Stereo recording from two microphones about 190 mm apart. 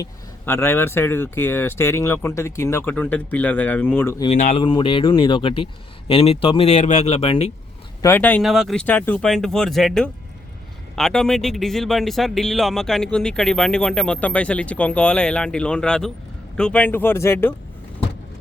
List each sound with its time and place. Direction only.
0.0 s speech: 10° left (ahead or behind)
4.4 s speech: 40° left (ahead or behind)
4.6 s speech: 25° left (ahead or behind)
8.0 s speech: 10° left (ahead or behind)
8.4 s a man's voice: centre (ahead or behind)